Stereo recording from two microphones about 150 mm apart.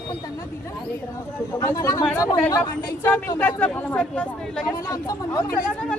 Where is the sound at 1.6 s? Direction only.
20° left (ahead or behind).